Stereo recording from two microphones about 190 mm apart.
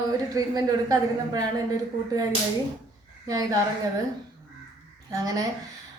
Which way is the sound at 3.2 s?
20° right (ahead or behind).